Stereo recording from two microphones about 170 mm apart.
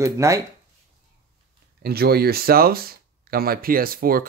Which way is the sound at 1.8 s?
65° right (ahead or behind).